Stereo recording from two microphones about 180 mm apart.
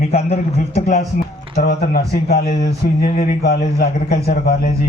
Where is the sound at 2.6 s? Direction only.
60° left (ahead or behind).